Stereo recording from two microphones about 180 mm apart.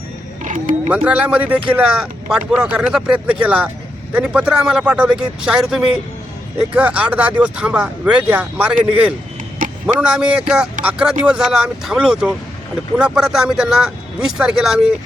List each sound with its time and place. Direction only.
0.4 s a sound: 45° right (ahead or behind)
0.9 s speech: 5° right (ahead or behind)
9.8 s speech: 5° right (ahead or behind)